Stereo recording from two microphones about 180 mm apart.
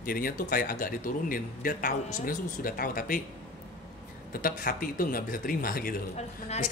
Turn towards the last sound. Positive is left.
turn(degrees=40)  # may be behind; listen again after turning